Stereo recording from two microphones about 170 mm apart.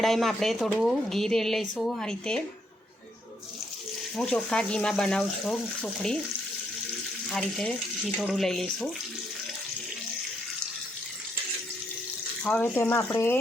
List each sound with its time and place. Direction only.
0.0 s speech: centre (ahead or behind)
4.1 s speech: 5° left (ahead or behind)
7.3 s frying: centre (ahead or behind)
8.2 s speech: centre (ahead or behind)
12.4 s speech: 10° left (ahead or behind)